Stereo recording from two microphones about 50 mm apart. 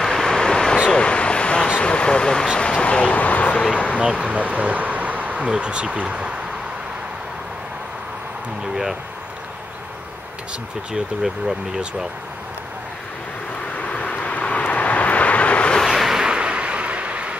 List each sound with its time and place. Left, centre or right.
0.0 s a sound: centre
1.8 s vehicle: left
2.5 s a sound: centre
4.0 s speech: right
13.7 s vehicle: left
15.8 s vehicle: centre; by 17.4 s right